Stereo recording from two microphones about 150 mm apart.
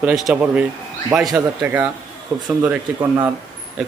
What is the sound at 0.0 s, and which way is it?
Speech, 5° right (ahead or behind).